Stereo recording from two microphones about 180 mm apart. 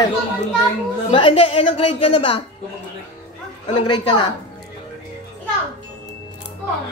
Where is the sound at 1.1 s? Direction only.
30° left (ahead or behind).